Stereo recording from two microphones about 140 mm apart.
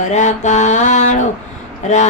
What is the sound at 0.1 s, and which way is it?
Mantra, 60° left (ahead or behind).